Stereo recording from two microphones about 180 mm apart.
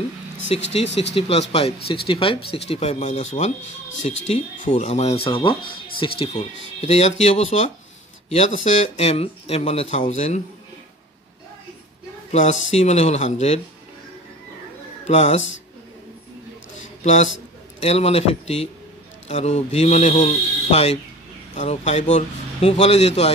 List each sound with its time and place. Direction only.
0.5 s speech: 35° left (ahead or behind)
4.3 s speech: 35° left (ahead or behind)
12.3 s speech: 40° left (ahead or behind)
15.0 s speech: 40° left (ahead or behind)
17.0 s a man's voice: 40° left (ahead or behind)